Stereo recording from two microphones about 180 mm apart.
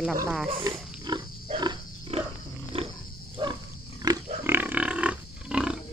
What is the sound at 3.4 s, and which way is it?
Wild animals, 25° right (ahead or behind).